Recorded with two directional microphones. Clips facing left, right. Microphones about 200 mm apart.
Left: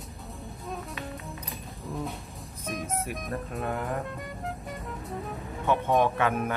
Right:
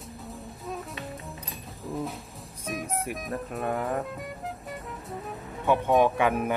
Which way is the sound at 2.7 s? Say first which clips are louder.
Right 1 dB; centre (ahead or behind).